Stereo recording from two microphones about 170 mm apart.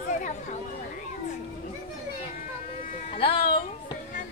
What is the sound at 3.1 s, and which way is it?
Music, 30° left (ahead or behind).